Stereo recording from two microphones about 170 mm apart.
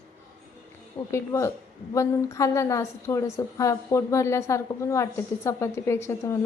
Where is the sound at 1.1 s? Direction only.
15° left (ahead or behind).